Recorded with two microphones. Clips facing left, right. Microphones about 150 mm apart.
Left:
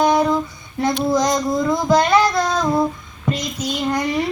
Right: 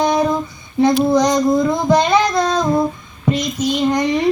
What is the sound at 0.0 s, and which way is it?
Child singing, 15° right (ahead or behind).